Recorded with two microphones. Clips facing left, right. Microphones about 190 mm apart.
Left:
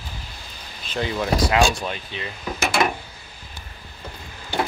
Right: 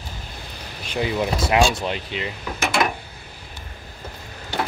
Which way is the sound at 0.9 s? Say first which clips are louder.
Right 2 dB; 10° right (ahead or behind).